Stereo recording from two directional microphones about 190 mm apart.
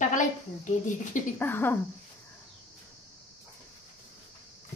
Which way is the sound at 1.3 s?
10° left (ahead or behind).